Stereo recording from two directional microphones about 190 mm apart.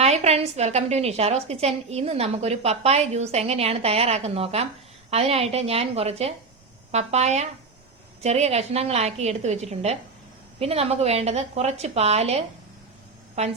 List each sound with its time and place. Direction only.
0.0 s a woman's voice: 35° right (ahead or behind)